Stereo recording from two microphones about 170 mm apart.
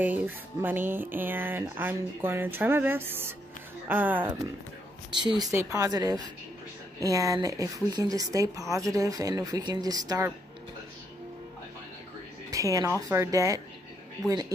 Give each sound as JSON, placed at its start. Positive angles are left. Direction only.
{"t": 0.0, "sound": "speech", "side_deg": -10}
{"t": 5.4, "sound": "a woman's voice", "side_deg": -15}
{"t": 12.4, "sound": "music", "side_deg": -20}
{"t": 13.1, "sound": "a woman's voice", "side_deg": -15}